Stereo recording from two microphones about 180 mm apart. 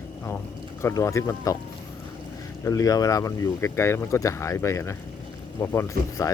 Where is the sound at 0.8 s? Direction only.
15° left (ahead or behind).